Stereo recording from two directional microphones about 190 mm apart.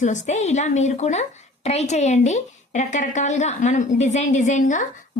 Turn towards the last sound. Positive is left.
turn(degrees=40)  # may be behind; listen again after turning